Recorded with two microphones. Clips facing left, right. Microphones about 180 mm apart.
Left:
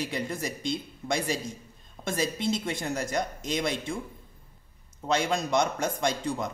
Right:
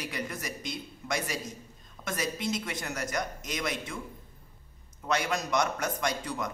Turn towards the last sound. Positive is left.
turn(degrees=25)  # may be behind; listen again after turning